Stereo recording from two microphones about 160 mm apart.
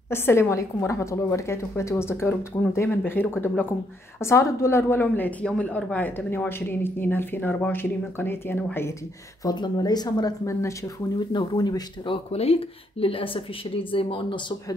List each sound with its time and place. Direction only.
0.1 s a woman's voice: 15° left (ahead or behind)
9.4 s speech: 25° left (ahead or behind)
12.3 s speech: 40° left (ahead or behind)